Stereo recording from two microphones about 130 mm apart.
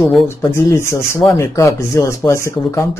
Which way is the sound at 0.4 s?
25° left (ahead or behind).